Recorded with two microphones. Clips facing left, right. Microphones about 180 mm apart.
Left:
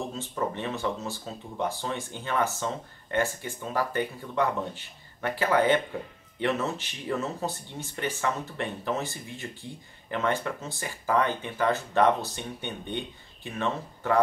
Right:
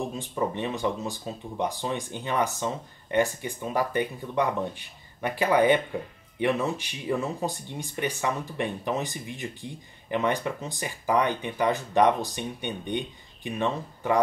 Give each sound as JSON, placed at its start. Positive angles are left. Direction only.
{"t": 0.0, "sound": "speech", "side_deg": -15}